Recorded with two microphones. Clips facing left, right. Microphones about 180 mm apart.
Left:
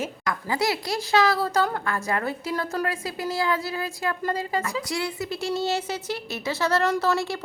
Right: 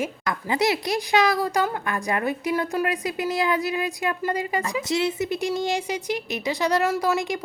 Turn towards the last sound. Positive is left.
turn(degrees=-15)  # may be behind; listen again after turning